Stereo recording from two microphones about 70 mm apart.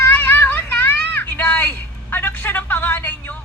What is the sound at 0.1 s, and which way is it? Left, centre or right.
Vehicle, left.